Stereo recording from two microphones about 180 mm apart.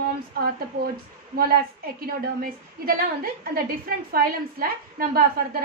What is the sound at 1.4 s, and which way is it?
A woman's voice, 55° right (ahead or behind).